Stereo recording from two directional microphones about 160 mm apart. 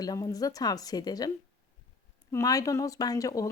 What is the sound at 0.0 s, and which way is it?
Speech, 20° left (ahead or behind).